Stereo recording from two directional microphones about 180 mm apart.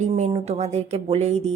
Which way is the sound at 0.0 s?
35° right (ahead or behind).